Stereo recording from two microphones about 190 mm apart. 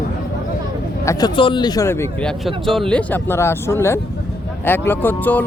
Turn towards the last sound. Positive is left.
turn(degrees=10)  # may be behind; listen again after turning